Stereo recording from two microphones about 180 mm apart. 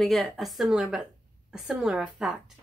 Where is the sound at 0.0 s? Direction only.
Centre (ahead or behind).